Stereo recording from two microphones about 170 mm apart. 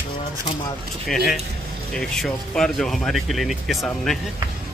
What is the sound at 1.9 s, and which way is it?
Speech, 5° left (ahead or behind).